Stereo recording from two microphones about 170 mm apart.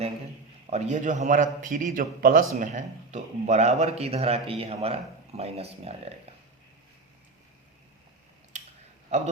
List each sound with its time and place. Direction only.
0.7 s a man's voice: 45° right (ahead or behind)
9.0 s a man's voice: 45° right (ahead or behind)